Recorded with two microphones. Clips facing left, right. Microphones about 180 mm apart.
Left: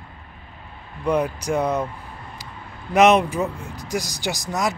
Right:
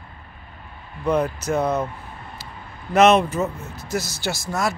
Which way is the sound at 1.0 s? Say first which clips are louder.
Even; 15° left (ahead or behind).